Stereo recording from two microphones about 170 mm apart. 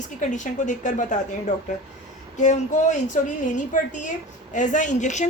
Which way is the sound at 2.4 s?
45° left (ahead or behind).